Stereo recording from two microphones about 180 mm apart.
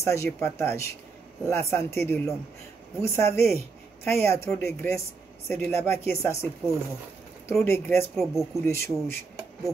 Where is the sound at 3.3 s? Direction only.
15° left (ahead or behind).